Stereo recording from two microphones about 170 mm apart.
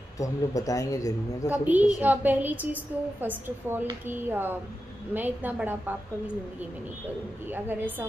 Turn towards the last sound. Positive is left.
turn(degrees=-10)  # may be behind; listen again after turning